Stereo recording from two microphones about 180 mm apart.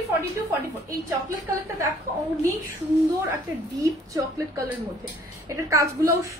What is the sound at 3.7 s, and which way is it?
A woman's voice, 15° right (ahead or behind).